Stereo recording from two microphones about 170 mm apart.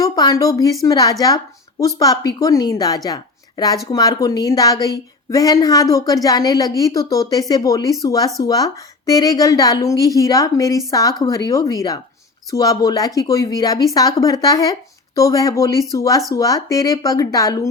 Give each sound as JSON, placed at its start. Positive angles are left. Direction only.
{"t": 0.0, "sound": "a woman's voice", "side_deg": 20}